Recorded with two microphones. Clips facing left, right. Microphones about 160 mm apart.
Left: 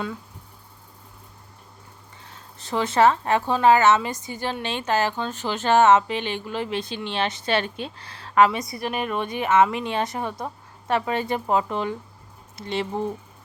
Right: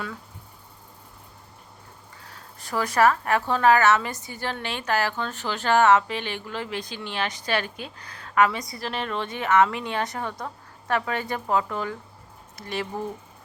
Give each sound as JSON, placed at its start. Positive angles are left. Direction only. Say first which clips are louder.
{"t": 2.3, "sound": "speech", "louder": "left 2 dB", "side_deg": 25}